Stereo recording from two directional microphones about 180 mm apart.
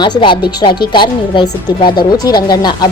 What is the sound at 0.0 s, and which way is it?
Speech, 25° left (ahead or behind).